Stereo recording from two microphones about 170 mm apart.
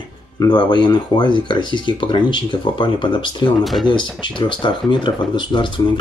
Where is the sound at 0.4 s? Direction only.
25° left (ahead or behind).